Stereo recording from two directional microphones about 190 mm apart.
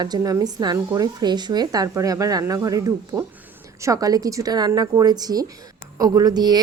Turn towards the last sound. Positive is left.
turn(degrees=-20)  # may be behind; listen again after turning